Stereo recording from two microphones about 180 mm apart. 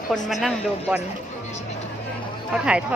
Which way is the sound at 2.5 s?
5° right (ahead or behind).